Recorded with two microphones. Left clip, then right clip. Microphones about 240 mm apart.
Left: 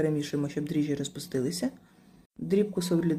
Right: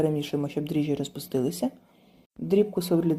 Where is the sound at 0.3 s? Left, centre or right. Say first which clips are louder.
Right 2 dB; centre.